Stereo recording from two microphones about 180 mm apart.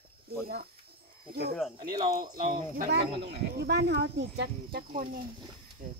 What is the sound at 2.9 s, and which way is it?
Speech, 70° right (ahead or behind).